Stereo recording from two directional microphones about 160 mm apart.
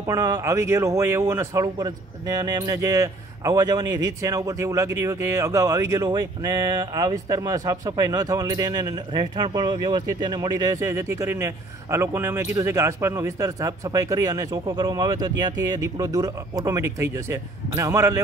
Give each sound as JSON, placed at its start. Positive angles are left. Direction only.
{"t": 0.0, "sound": "speech", "side_deg": -20}